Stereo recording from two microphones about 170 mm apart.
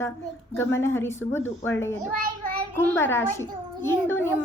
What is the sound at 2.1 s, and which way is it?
Speech, 55° right (ahead or behind).